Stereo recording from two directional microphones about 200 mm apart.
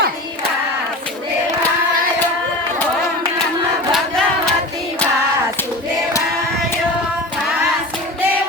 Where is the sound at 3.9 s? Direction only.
Centre (ahead or behind).